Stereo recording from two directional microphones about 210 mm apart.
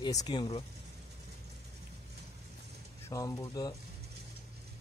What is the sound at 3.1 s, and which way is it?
Speech, 15° left (ahead or behind).